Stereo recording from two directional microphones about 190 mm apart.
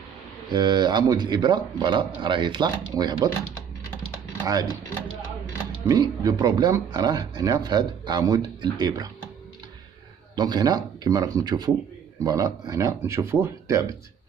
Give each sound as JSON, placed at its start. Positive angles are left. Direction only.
{"t": 0.5, "sound": "speech", "side_deg": -25}
{"t": 5.9, "sound": "speech", "side_deg": -20}
{"t": 10.3, "sound": "speech", "side_deg": -20}